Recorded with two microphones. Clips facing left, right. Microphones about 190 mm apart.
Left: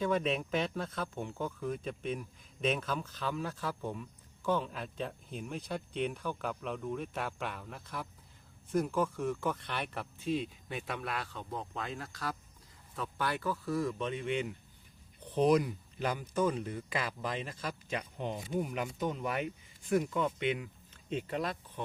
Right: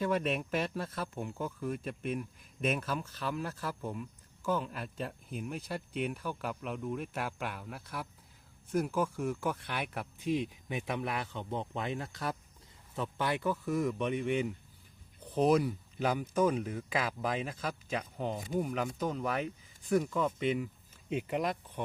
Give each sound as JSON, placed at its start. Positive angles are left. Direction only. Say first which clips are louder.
{"t": 0.0, "sound": "speech", "louder": "even", "side_deg": 0}
{"t": 16.0, "sound": "speech", "louder": "right 3 dB", "side_deg": -5}
{"t": 20.9, "sound": "speech", "louder": "right 2 dB", "side_deg": -10}